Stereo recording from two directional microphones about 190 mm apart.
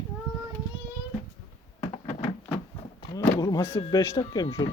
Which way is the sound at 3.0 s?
20° left (ahead or behind).